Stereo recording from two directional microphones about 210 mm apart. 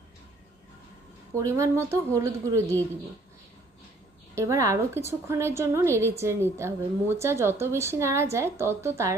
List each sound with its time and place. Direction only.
1.3 s a woman's voice: 15° right (ahead or behind)
4.4 s a woman's voice: 15° right (ahead or behind)